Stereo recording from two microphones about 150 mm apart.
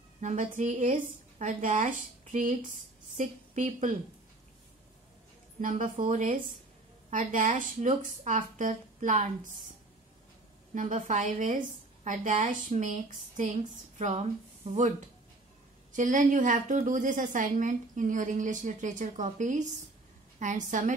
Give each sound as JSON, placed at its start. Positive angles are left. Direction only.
{"t": 0.2, "sound": "a woman's voice", "side_deg": -55}
{"t": 5.6, "sound": "a woman's voice", "side_deg": -60}
{"t": 10.7, "sound": "a woman's voice", "side_deg": -55}
{"t": 15.9, "sound": "a woman's voice", "side_deg": -60}